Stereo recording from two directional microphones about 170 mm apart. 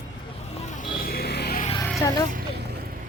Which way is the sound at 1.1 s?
65° left (ahead or behind).